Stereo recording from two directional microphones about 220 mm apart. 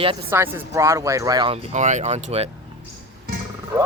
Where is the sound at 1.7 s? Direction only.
35° right (ahead or behind).